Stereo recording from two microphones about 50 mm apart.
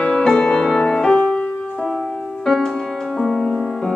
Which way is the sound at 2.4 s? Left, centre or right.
Centre.